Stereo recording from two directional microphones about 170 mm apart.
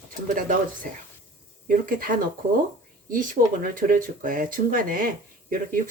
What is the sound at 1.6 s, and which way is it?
Speech, 55° right (ahead or behind).